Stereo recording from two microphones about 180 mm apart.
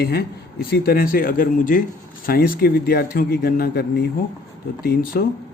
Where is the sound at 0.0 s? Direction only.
60° left (ahead or behind).